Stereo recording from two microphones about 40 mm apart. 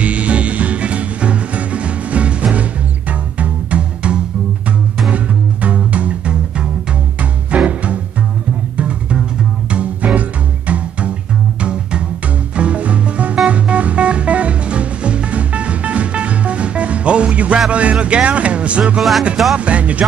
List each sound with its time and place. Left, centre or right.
0.0 s music: right
9.7 s music: right
12.5 s music: right
19.5 s speech: right